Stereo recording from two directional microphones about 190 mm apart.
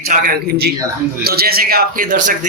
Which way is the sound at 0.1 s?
50° right (ahead or behind).